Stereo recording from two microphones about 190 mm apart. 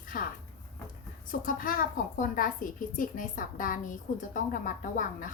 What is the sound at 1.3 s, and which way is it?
A woman's voice, 45° left (ahead or behind).